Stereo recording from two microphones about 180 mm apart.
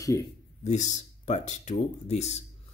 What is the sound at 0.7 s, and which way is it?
Speech, 40° left (ahead or behind).